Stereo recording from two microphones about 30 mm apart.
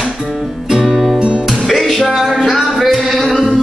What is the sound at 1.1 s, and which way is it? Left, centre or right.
Music, right.